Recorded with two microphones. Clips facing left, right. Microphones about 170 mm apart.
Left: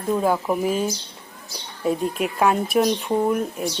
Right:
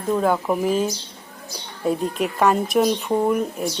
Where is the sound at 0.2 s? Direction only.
5° left (ahead or behind).